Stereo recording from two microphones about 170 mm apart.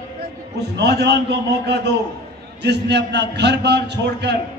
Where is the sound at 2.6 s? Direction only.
85° right.